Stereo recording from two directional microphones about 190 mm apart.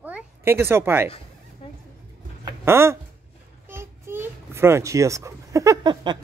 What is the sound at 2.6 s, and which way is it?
A child's voice, 15° right (ahead or behind).